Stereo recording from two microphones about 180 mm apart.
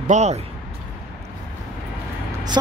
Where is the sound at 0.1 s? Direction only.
40° right (ahead or behind).